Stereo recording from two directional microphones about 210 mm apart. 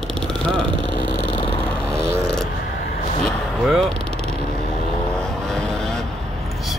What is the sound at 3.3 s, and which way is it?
Vehicle, centre (ahead or behind).